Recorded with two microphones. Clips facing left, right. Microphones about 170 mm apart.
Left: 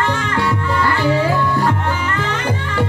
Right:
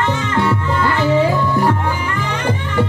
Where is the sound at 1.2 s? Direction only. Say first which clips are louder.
Right 2 dB; 15° right (ahead or behind).